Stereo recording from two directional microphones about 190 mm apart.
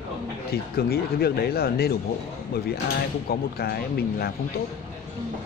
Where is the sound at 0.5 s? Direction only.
55° left (ahead or behind).